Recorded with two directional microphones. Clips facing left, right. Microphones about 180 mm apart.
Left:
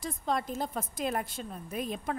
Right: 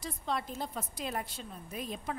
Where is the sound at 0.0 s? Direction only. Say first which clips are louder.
Left 4 dB; 45° left (ahead or behind).